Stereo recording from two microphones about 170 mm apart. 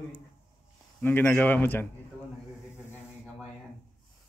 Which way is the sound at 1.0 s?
10° left (ahead or behind).